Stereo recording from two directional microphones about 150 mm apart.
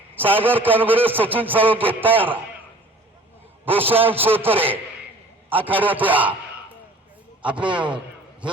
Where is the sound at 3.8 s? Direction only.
15° right (ahead or behind).